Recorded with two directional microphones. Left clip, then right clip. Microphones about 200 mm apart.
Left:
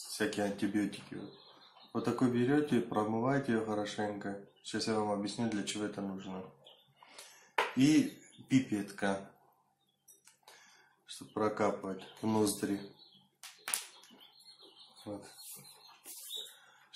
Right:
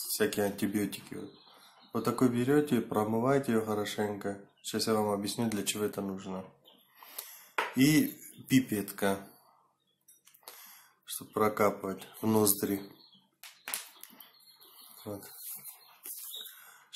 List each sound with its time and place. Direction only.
0.2 s speech: 50° right (ahead or behind)
7.7 s dishes: 50° right (ahead or behind)
8.5 s speech: 50° right (ahead or behind)
11.3 s speech: 50° right (ahead or behind)
15.1 s speech: 55° right (ahead or behind)